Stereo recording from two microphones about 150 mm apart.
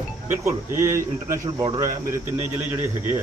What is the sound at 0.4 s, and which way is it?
Speech, 20° right (ahead or behind).